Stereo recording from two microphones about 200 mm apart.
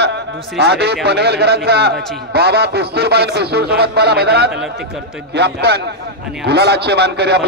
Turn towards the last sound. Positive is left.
turn(degrees=-55)  # may be behind; listen again after turning